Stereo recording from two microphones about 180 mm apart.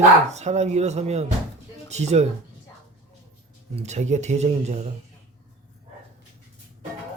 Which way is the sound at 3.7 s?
40° right (ahead or behind).